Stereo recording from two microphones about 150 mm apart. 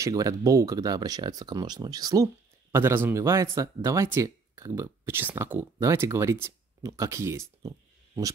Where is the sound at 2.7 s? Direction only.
15° right (ahead or behind).